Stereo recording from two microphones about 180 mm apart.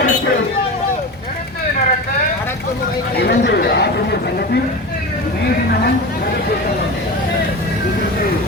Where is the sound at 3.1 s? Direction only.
65° left (ahead or behind).